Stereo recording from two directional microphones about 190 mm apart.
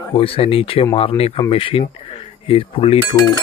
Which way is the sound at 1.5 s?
30° left (ahead or behind).